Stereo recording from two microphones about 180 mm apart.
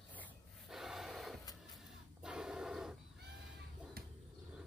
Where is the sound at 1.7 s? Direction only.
5° right (ahead or behind).